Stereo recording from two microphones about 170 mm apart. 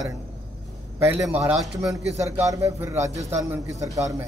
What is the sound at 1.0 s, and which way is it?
A man's voice, 10° right (ahead or behind).